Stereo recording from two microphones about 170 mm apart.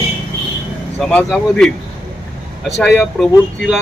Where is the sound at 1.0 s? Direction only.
10° left (ahead or behind).